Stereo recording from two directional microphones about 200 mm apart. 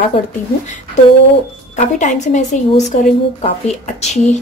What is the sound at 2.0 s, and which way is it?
Speech, 35° left (ahead or behind).